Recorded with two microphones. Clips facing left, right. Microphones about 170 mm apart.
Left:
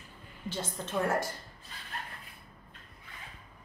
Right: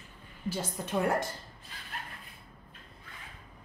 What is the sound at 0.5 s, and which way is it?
Speech, 10° right (ahead or behind).